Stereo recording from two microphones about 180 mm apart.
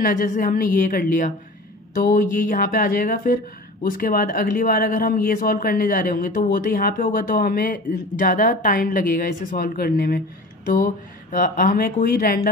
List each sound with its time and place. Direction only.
0.0 s speech: 50° left (ahead or behind)